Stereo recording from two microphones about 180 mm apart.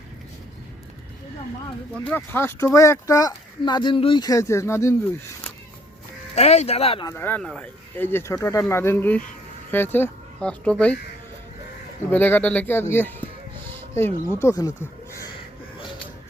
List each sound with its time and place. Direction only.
2.0 s speech: 10° left (ahead or behind)
6.3 s speech: 35° left (ahead or behind)
7.1 s speech: 10° left (ahead or behind)
12.1 s speech: 10° left (ahead or behind)